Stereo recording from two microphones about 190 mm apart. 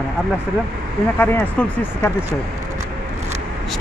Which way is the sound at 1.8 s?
10° left (ahead or behind).